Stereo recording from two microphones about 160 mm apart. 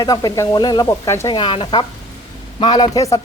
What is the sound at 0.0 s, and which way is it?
A woman's voice, 25° left (ahead or behind).